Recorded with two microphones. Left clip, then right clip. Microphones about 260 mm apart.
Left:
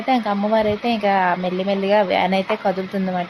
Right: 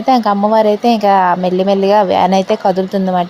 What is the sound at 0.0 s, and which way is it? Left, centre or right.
Speech, right.